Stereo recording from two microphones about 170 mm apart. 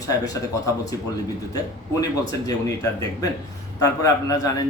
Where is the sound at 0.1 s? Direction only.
20° left (ahead or behind).